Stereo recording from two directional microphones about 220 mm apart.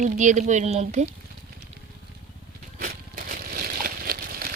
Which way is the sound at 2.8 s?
40° right (ahead or behind).